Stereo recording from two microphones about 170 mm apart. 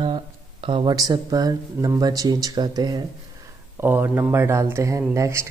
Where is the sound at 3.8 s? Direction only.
10° right (ahead or behind).